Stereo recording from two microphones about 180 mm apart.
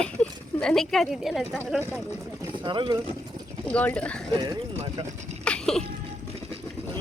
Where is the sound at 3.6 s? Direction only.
10° left (ahead or behind).